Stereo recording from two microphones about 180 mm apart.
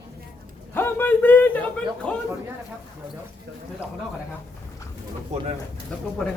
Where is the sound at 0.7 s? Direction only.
10° left (ahead or behind).